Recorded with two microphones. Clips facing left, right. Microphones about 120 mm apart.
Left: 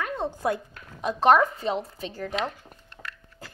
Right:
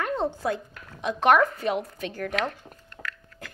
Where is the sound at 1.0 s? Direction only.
30° left (ahead or behind).